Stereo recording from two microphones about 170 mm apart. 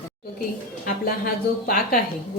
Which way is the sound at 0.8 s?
60° left (ahead or behind).